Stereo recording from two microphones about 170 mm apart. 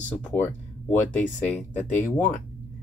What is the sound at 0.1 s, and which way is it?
Speech, 10° left (ahead or behind).